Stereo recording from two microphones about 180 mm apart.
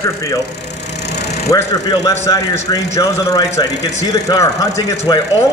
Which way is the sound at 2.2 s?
15° left (ahead or behind).